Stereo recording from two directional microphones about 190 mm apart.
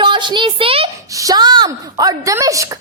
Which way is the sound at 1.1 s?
20° right (ahead or behind).